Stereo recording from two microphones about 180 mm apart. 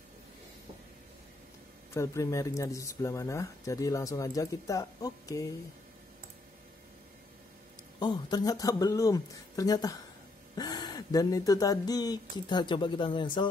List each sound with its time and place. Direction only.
2.0 s speech: 15° left (ahead or behind)
8.0 s speech: 25° left (ahead or behind)